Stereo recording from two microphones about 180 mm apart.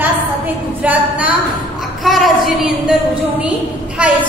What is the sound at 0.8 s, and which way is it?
Speech, 10° right (ahead or behind).